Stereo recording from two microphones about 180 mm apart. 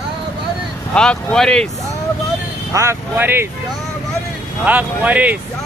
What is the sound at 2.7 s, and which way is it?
Speech, 15° right (ahead or behind).